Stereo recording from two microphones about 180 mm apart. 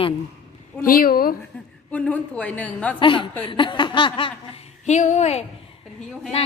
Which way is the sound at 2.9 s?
25° left (ahead or behind).